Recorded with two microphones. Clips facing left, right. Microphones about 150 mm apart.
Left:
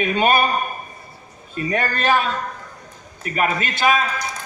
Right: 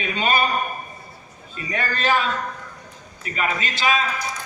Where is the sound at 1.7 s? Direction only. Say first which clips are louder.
Left 2 dB; 50° left (ahead or behind).